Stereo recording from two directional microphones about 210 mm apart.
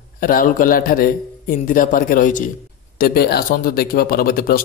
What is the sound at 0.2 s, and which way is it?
A man's voice, 40° left (ahead or behind).